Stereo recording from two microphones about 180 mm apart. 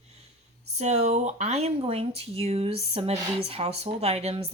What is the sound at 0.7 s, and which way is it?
A woman's voice, 40° right (ahead or behind).